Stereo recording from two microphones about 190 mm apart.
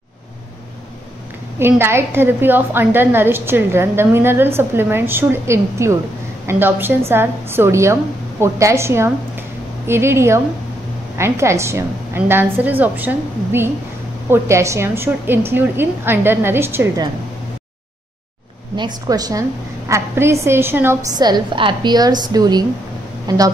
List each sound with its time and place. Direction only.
1.6 s a woman's voice: 10° right (ahead or behind)
18.8 s a woman's voice: 20° right (ahead or behind)